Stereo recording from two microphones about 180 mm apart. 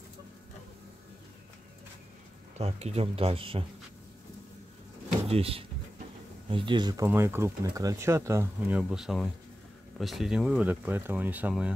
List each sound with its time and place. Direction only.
2.6 s speech: 35° right (ahead or behind)
5.2 s speech: 35° right (ahead or behind); by 11.7 s 5° right (ahead or behind)